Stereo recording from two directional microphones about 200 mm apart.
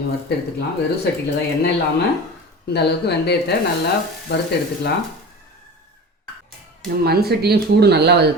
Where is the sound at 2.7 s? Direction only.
55° left (ahead or behind).